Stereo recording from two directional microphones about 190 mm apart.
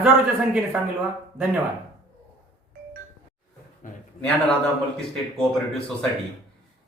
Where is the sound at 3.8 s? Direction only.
45° left (ahead or behind).